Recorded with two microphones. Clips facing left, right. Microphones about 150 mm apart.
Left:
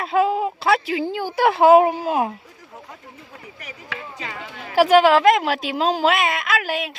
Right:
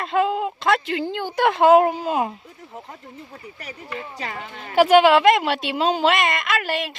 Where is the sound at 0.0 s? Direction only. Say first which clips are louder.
Left 2 dB; 5° left (ahead or behind).